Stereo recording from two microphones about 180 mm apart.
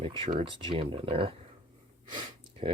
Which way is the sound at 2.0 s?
25° right (ahead or behind).